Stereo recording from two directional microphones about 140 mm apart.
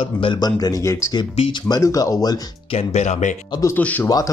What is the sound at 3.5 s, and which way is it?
Speech, 25° left (ahead or behind).